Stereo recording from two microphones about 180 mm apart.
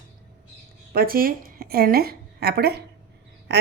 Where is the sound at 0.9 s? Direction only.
55° right (ahead or behind).